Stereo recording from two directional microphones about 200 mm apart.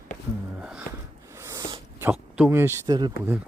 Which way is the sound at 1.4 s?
15° right (ahead or behind).